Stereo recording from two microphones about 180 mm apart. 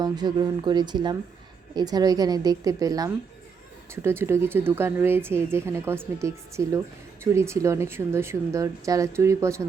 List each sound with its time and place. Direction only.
0.0 s a woman's voice: 25° right (ahead or behind)